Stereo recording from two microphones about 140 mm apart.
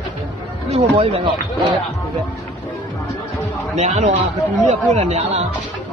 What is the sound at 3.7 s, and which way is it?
Speech, 55° right (ahead or behind).